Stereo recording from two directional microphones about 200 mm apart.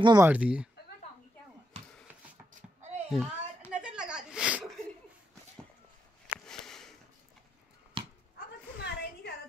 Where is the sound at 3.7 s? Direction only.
5° right (ahead or behind).